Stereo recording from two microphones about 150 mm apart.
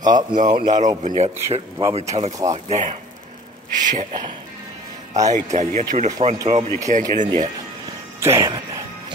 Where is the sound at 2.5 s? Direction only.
50° right (ahead or behind).